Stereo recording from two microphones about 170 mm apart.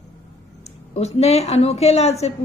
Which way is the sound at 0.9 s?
40° left (ahead or behind).